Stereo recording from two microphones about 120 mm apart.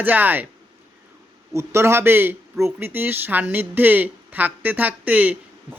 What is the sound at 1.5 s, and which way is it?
Speech, 20° right (ahead or behind).